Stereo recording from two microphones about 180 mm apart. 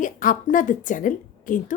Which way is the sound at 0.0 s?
45° left (ahead or behind).